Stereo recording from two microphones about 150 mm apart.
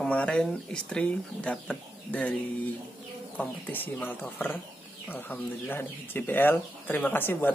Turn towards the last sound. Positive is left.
turn(degrees=15)  # may be behind; listen again after turning